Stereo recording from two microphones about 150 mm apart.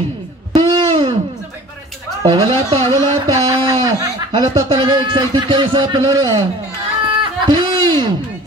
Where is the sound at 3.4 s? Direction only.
25° right (ahead or behind).